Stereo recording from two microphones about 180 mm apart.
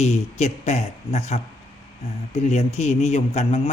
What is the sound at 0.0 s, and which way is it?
A man's voice, 40° left (ahead or behind).